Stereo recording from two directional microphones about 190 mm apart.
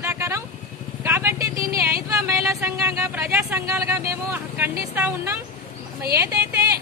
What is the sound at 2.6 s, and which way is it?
Speech, 15° right (ahead or behind).